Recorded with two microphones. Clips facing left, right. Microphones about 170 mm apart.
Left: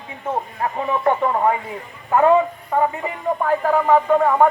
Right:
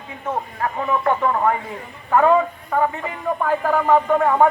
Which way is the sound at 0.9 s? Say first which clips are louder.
Left 1 dB; 20° left (ahead or behind).